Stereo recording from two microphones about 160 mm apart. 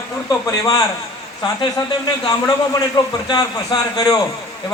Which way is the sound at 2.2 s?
25° left (ahead or behind).